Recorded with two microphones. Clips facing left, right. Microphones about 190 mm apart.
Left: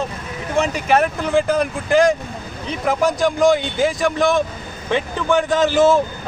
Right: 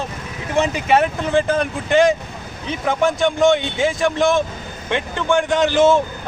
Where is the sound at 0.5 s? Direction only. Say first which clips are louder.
Right 1 dB; 25° right (ahead or behind).